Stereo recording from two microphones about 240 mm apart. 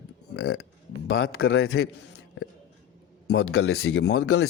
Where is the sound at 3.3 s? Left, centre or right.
Left.